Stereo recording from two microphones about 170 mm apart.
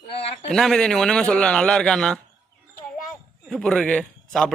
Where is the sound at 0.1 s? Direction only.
35° left (ahead or behind).